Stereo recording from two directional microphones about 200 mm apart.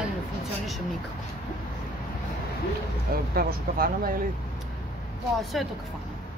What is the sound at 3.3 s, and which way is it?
Speech, 50° right (ahead or behind).